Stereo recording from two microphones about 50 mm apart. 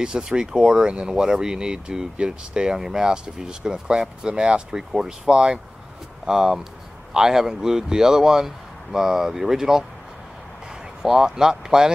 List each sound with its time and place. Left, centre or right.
0.0 s speech: centre
11.0 s speech: centre